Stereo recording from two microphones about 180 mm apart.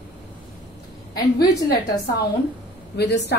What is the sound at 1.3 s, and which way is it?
Speech, 60° left (ahead or behind).